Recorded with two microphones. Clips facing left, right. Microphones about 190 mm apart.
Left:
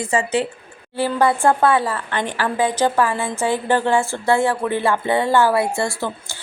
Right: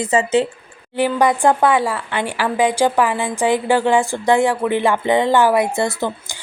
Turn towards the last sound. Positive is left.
turn(degrees=-20)  # may be behind; listen again after turning